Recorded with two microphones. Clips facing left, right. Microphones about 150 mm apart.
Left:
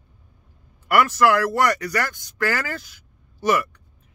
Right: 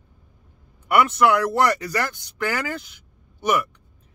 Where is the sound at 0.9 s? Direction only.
20° right (ahead or behind).